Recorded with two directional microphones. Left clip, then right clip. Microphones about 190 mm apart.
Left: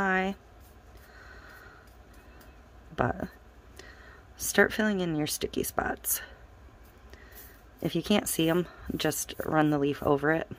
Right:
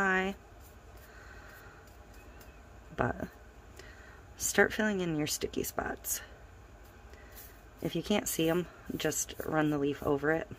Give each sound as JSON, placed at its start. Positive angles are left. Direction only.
{"t": 0.0, "sound": "a sound", "side_deg": 10}
{"t": 3.0, "sound": "speech", "side_deg": 15}
{"t": 4.4, "sound": "speech", "side_deg": 15}
{"t": 7.8, "sound": "speech", "side_deg": 20}